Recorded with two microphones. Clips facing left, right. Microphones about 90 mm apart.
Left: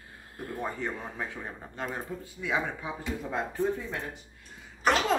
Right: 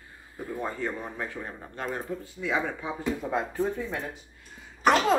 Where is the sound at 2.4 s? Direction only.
10° left (ahead or behind).